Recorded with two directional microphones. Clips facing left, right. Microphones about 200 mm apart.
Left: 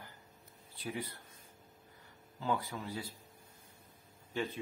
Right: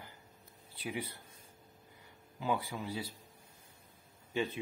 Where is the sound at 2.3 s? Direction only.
10° right (ahead or behind).